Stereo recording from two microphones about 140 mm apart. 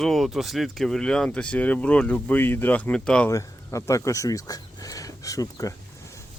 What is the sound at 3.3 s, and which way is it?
Speech, 20° left (ahead or behind).